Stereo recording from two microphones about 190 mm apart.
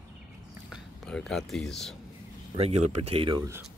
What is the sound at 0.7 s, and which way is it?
Speech, centre (ahead or behind).